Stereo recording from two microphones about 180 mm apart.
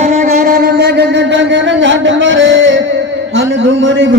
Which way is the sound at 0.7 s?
70° right (ahead or behind).